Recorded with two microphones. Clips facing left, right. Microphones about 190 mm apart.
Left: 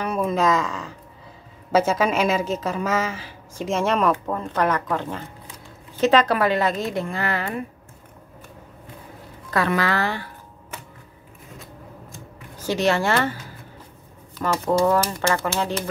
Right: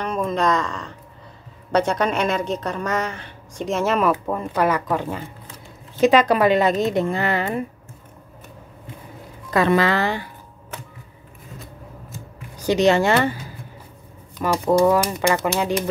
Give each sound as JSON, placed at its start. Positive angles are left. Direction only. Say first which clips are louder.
{"t": 0.0, "sound": "a woman's voice", "louder": "even", "side_deg": 5}
{"t": 9.5, "sound": "speech", "louder": "right 4 dB", "side_deg": -20}
{"t": 11.5, "sound": "shuffling cards", "louder": "right 1 dB", "side_deg": 0}
{"t": 12.5, "sound": "speech", "louder": "right 5 dB", "side_deg": -20}
{"t": 14.4, "sound": "speech", "louder": "right 3 dB", "side_deg": -10}